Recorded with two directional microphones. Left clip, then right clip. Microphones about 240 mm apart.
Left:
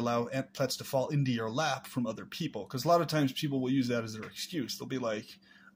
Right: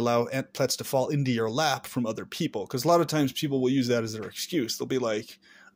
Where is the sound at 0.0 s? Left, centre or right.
Right.